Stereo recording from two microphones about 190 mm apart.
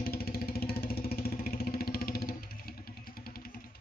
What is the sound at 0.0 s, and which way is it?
Vehicle, 50° left (ahead or behind).